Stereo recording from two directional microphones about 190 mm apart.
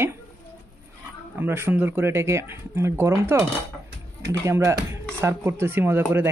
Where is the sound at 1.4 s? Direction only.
10° right (ahead or behind).